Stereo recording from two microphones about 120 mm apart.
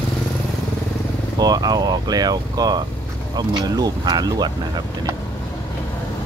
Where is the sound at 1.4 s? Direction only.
35° right (ahead or behind).